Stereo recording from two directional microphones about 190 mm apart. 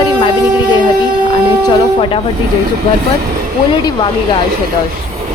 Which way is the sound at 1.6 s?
25° left (ahead or behind).